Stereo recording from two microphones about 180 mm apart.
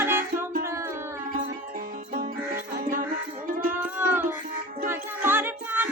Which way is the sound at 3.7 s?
10° right (ahead or behind).